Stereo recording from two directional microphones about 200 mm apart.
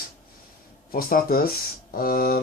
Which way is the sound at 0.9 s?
45° left (ahead or behind).